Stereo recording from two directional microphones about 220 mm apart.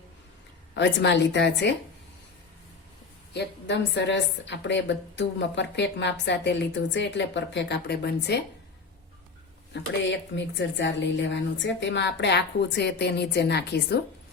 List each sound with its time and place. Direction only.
0.7 s a woman's voice: 55° left (ahead or behind)
3.3 s a woman's voice: 50° left (ahead or behind)
9.7 s a woman's voice: 55° left (ahead or behind)